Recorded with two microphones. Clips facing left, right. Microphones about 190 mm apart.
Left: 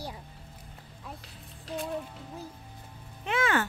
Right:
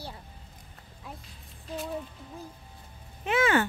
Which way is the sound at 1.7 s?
80° left.